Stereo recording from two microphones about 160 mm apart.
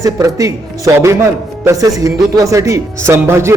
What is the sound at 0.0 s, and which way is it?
Speech, 20° right (ahead or behind).